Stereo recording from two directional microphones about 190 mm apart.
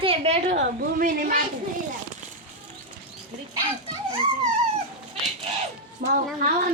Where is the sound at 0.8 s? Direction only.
45° right (ahead or behind).